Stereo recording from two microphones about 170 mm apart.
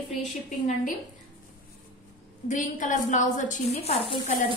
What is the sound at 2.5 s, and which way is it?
A woman's voice, 50° left (ahead or behind).